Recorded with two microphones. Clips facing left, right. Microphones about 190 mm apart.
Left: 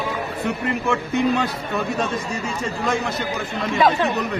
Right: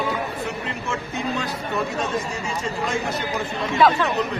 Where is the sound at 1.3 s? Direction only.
70° left (ahead or behind).